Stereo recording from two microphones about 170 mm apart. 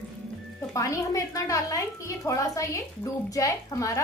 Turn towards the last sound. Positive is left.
turn(degrees=20)  # may be behind; listen again after turning